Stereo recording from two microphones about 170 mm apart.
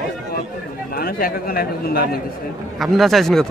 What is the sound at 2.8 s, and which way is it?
Speech, centre (ahead or behind).